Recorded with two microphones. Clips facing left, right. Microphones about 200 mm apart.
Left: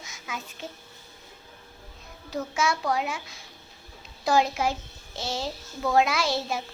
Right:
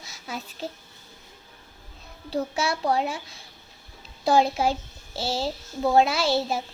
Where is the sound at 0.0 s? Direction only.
35° right (ahead or behind).